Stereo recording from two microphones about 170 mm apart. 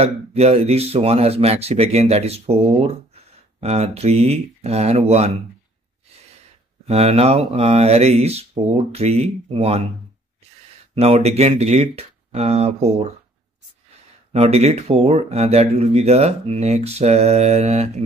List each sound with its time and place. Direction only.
0.0 s speech: 40° right (ahead or behind)
6.9 s speech: 35° right (ahead or behind)
11.0 s speech: 40° right (ahead or behind)
14.3 s speech: 40° right (ahead or behind)